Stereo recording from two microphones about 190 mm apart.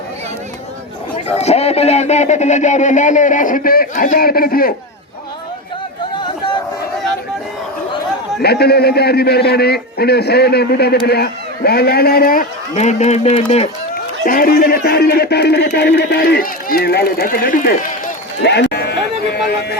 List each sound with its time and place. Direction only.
1.1 s speech: 35° left (ahead or behind); by 4.7 s 50° left (ahead or behind)
8.4 s a man's voice: 55° left (ahead or behind); by 13.7 s 35° left (ahead or behind)
13.9 s speech: 50° left (ahead or behind)